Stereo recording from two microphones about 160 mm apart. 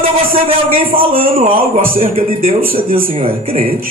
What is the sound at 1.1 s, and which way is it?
Speech, 60° right (ahead or behind).